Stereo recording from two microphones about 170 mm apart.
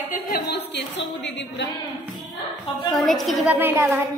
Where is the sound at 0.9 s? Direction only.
90° left.